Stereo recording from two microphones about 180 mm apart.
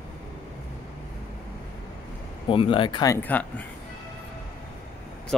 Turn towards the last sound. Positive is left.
turn(degrees=10)  # may be behind; listen again after turning